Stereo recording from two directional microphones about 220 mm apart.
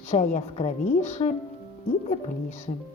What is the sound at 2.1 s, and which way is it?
Speech, 35° left (ahead or behind).